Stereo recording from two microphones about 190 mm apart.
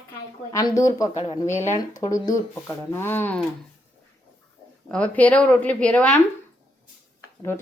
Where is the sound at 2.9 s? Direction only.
10° left (ahead or behind).